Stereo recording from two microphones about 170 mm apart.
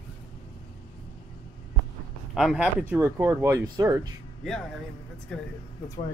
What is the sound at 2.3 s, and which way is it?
Speech, 5° right (ahead or behind).